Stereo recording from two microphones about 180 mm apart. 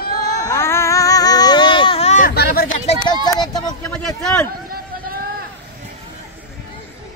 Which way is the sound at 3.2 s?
20° left (ahead or behind).